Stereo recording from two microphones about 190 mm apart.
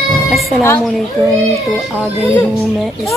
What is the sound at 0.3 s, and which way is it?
Speech, centre (ahead or behind).